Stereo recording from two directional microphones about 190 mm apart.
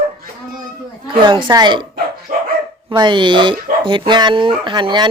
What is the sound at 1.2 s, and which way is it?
Speech, 25° right (ahead or behind).